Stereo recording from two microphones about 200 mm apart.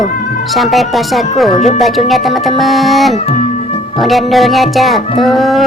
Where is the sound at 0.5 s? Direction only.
Centre (ahead or behind).